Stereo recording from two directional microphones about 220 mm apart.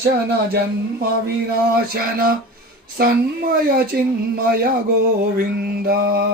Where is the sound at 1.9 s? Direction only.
40° right (ahead or behind).